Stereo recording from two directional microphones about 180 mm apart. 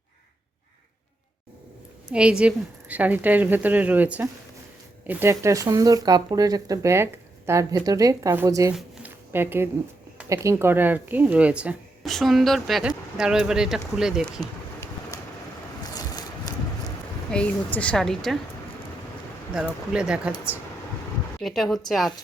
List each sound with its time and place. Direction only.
2.1 s speech: 5° right (ahead or behind)
8.7 s a sound: 10° right (ahead or behind)
10.2 s speech: 15° right (ahead or behind)
15.8 s a sound: 20° left (ahead or behind)
17.3 s speech: 5° left (ahead or behind)
19.5 s speech: 5° right (ahead or behind)